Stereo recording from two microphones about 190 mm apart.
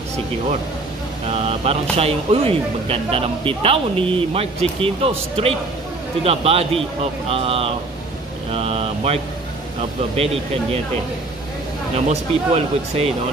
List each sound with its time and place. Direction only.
1.3 s speech: 35° right (ahead or behind)
8.5 s mantra: 30° right (ahead or behind)
10.1 s speech: 30° right (ahead or behind)
12.1 s speech: 35° right (ahead or behind)